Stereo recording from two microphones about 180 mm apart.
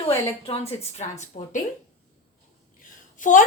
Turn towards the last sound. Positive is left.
turn(degrees=45)  # may be behind; listen again after turning